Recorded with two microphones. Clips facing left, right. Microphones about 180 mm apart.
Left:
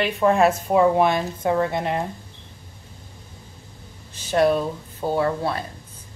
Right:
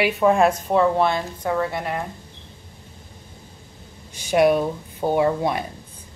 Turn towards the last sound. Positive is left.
turn(degrees=-15)  # may be behind; listen again after turning